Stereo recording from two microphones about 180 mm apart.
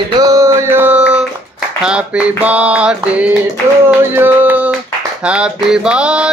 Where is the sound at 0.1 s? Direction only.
20° right (ahead or behind).